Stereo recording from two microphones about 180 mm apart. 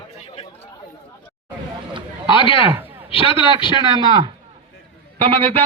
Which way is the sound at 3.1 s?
30° left (ahead or behind).